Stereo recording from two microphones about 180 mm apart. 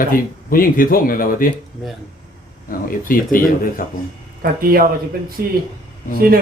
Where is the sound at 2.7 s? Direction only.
50° left (ahead or behind).